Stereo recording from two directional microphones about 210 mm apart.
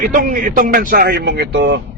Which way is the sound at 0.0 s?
40° right (ahead or behind).